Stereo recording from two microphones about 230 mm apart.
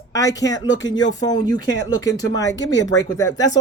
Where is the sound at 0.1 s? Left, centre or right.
Centre.